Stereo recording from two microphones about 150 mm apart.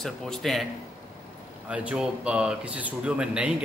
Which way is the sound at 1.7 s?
10° right (ahead or behind).